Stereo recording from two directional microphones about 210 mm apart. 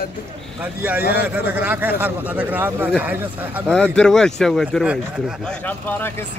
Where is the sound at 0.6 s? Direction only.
10° right (ahead or behind).